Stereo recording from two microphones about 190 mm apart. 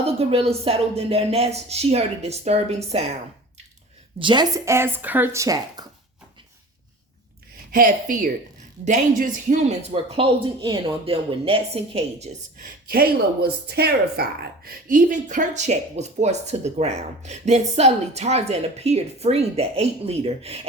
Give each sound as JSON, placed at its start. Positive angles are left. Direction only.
{"t": 0.0, "sound": "speech", "side_deg": -30}
{"t": 4.2, "sound": "speech", "side_deg": -25}
{"t": 7.7, "sound": "a woman's voice", "side_deg": -45}
{"t": 12.9, "sound": "speech", "side_deg": -55}